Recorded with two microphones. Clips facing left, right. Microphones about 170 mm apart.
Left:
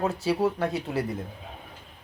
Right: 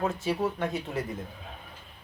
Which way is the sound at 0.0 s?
35° left (ahead or behind).